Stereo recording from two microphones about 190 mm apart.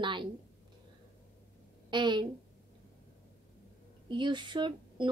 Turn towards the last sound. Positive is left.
turn(degrees=-25)  # may be behind; listen again after turning